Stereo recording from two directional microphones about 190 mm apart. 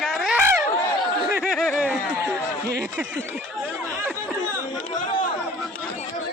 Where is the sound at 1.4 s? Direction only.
Centre (ahead or behind).